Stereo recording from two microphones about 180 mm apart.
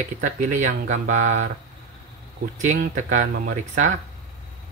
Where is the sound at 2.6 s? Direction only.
45° right (ahead or behind).